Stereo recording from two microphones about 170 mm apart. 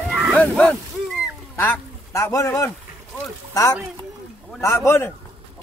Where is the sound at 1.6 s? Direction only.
15° left (ahead or behind).